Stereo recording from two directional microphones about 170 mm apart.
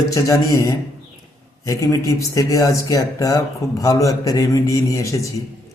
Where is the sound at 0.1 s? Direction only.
20° left (ahead or behind).